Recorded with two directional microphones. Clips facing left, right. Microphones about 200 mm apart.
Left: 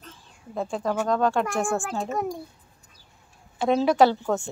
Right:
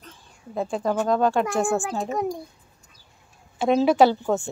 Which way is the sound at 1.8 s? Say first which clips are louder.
Right 2 dB; 15° right (ahead or behind).